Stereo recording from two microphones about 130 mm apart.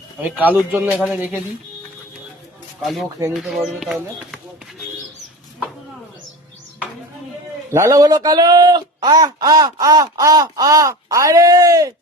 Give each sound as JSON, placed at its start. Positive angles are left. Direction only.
{"t": 0.2, "sound": "speech", "side_deg": -10}
{"t": 3.3, "sound": "speech", "side_deg": 0}
{"t": 7.7, "sound": "speech", "side_deg": -25}